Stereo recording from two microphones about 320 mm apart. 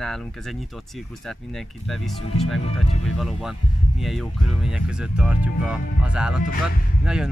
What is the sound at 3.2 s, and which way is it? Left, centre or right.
Speech, centre.